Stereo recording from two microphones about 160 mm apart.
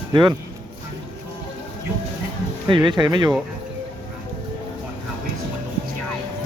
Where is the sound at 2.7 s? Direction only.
30° right (ahead or behind).